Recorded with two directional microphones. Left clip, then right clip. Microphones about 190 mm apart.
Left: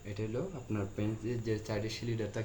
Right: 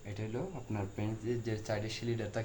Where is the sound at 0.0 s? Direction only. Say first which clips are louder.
Left 4 dB; 25° right (ahead or behind).